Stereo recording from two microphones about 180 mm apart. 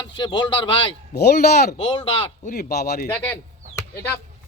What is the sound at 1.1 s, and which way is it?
A man's voice, 65° left (ahead or behind).